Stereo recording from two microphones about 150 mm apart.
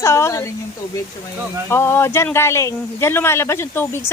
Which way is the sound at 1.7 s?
15° left (ahead or behind).